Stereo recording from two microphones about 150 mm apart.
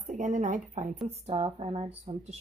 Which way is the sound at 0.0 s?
55° right (ahead or behind).